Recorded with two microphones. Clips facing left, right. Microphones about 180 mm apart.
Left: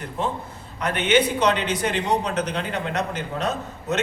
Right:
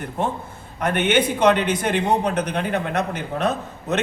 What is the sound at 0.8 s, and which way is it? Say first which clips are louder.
A man's voice: right 1 dB; 55° right (ahead or behind).